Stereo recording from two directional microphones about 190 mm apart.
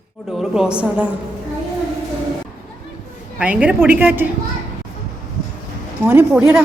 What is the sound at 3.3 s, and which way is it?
Speech, 5° right (ahead or behind).